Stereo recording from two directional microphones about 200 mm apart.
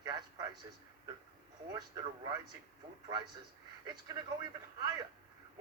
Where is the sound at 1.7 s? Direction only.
20° right (ahead or behind).